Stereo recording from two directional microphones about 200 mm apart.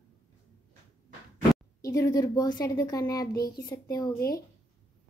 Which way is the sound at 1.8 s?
15° left (ahead or behind).